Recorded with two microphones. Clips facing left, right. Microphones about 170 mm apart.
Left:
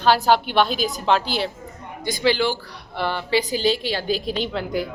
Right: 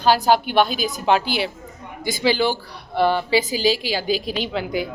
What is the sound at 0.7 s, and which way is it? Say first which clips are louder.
Speech: left 1 dB; 5° right (ahead or behind).